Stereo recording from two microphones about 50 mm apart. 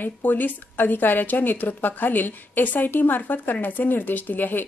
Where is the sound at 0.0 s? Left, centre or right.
Left.